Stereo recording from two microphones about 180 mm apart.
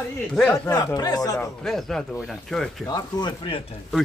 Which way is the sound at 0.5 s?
20° left (ahead or behind).